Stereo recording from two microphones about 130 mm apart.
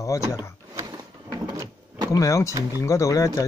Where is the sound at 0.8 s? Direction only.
25° right (ahead or behind).